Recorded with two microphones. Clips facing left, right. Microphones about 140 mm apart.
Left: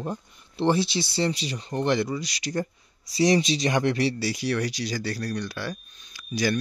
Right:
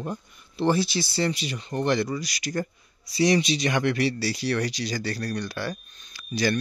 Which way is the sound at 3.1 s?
35° left (ahead or behind).